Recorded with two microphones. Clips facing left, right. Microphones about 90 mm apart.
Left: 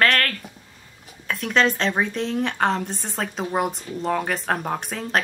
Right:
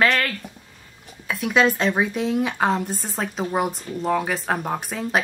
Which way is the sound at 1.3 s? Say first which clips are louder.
Right 2 dB; 5° right (ahead or behind).